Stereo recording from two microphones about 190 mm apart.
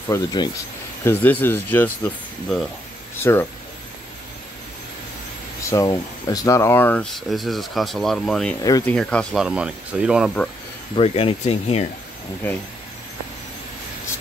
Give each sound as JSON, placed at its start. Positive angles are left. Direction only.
{"t": 0.1, "sound": "speech", "side_deg": 20}
{"t": 1.0, "sound": "speech", "side_deg": 10}
{"t": 5.6, "sound": "speech", "side_deg": 15}
{"t": 8.6, "sound": "speech", "side_deg": 20}
{"t": 8.9, "sound": "speech", "side_deg": 5}
{"t": 11.0, "sound": "speech", "side_deg": 30}